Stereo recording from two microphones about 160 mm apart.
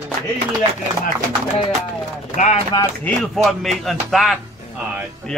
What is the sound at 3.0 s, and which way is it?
A man's voice, centre (ahead or behind).